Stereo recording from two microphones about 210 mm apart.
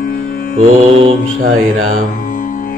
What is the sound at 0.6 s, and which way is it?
Mantra, 30° right (ahead or behind).